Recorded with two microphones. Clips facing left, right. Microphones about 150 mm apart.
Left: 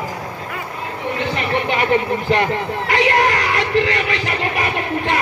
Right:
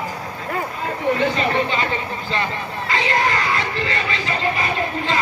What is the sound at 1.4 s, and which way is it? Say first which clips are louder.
Speech: left 1 dB; 70° left (ahead or behind).